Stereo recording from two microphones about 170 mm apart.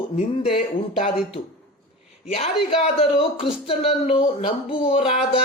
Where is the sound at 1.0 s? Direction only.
35° left (ahead or behind).